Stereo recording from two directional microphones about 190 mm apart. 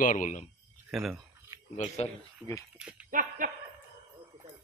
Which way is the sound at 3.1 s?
45° right (ahead or behind).